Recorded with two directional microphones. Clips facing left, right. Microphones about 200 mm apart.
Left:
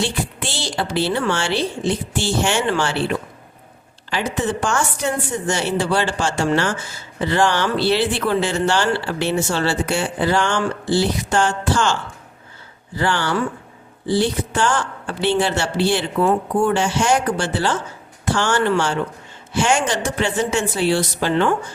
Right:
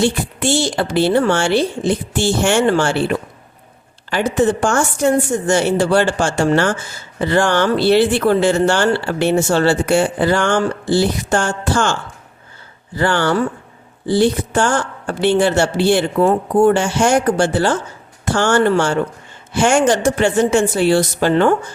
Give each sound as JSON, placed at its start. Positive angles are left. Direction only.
{"t": 0.0, "sound": "speech", "side_deg": -50}
{"t": 13.0, "sound": "speech", "side_deg": -50}